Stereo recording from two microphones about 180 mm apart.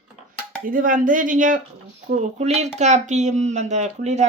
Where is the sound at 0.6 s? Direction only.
50° right (ahead or behind).